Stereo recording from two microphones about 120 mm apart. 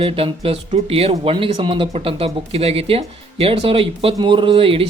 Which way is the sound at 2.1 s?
55° right (ahead or behind).